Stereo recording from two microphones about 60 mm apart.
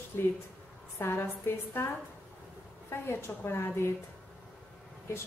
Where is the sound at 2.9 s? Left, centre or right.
Left.